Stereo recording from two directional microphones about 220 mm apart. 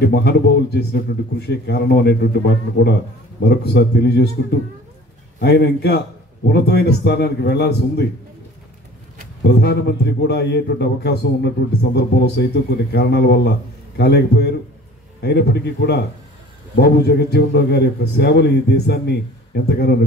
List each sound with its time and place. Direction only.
0.0 s a man's voice: 50° left (ahead or behind)
9.4 s a man's voice: 50° left (ahead or behind)